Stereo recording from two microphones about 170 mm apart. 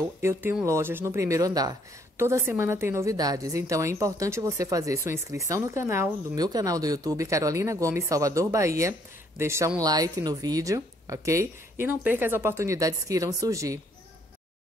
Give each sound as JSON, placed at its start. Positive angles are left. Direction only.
{"t": 0.2, "sound": "speech", "side_deg": -15}